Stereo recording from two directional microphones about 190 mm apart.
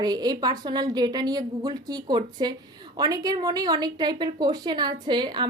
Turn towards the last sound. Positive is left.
turn(degrees=-25)  # may be behind; listen again after turning